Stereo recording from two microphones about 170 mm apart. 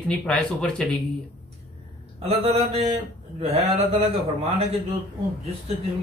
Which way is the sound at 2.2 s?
40° right (ahead or behind).